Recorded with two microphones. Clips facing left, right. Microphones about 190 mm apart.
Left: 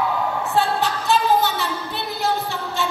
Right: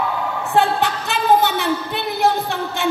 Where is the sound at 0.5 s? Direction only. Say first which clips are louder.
Right 5 dB; 60° right (ahead or behind).